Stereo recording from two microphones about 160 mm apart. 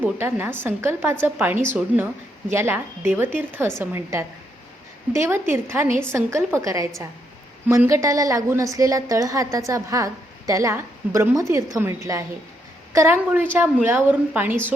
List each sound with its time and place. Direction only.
0.0 s a woman's voice: 10° right (ahead or behind)